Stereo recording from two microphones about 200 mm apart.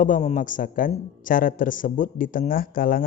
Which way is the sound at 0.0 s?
40° left (ahead or behind).